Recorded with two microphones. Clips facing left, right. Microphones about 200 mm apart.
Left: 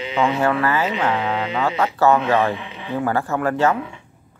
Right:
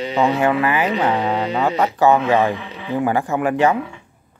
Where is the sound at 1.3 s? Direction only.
35° right (ahead or behind).